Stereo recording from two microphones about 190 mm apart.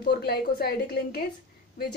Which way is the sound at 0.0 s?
55° left (ahead or behind).